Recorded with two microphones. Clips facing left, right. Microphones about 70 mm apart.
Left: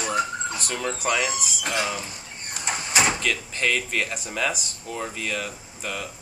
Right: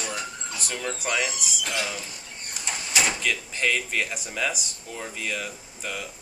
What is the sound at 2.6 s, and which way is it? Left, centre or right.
Door, left.